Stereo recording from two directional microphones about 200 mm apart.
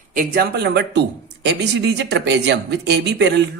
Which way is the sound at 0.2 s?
50° right (ahead or behind).